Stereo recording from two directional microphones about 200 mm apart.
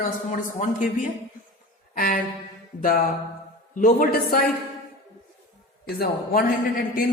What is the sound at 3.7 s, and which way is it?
Speech, 45° left (ahead or behind).